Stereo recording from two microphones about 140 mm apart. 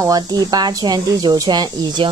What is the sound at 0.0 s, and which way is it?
Speech, 25° right (ahead or behind).